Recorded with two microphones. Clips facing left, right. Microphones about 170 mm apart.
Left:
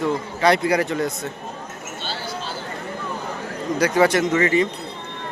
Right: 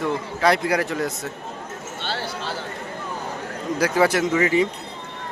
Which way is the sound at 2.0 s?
65° right (ahead or behind).